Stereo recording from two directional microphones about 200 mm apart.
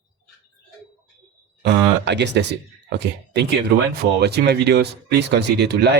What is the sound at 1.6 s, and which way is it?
Speech, 55° right (ahead or behind).